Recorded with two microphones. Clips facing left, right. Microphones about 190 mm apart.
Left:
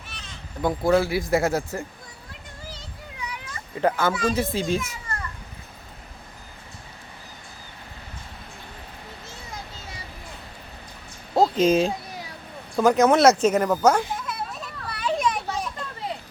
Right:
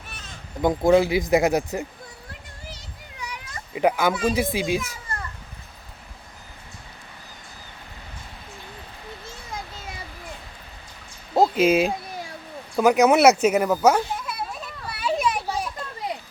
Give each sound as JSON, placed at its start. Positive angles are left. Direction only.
{"t": 0.6, "sound": "speech", "side_deg": -20}
{"t": 3.8, "sound": "speech", "side_deg": -15}
{"t": 11.3, "sound": "speech", "side_deg": -10}
{"t": 12.7, "sound": "a sound", "side_deg": -10}